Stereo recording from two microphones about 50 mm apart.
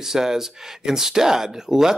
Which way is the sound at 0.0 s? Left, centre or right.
Centre.